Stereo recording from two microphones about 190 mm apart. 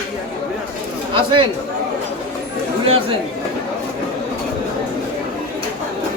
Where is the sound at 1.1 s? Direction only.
25° right (ahead or behind).